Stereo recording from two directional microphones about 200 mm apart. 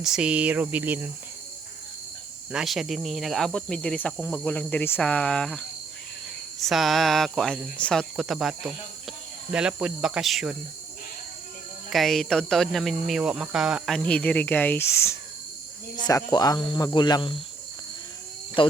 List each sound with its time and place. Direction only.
0.0 s speech: 5° right (ahead or behind)
2.5 s speech: centre (ahead or behind)
11.9 s speech: centre (ahead or behind); by 17.4 s 20° left (ahead or behind)
18.6 s speech: 25° left (ahead or behind)